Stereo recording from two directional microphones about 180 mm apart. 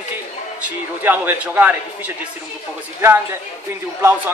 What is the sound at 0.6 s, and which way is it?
A man's voice, 10° right (ahead or behind).